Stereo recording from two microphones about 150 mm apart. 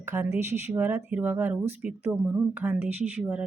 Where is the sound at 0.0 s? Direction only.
15° right (ahead or behind).